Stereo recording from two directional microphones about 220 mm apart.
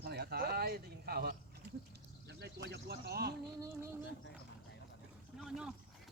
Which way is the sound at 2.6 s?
50° right (ahead or behind).